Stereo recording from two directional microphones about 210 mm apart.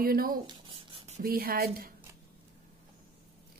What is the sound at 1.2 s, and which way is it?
Speech, 45° right (ahead or behind).